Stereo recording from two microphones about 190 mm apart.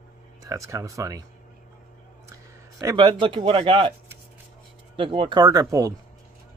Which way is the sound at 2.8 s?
25° right (ahead or behind).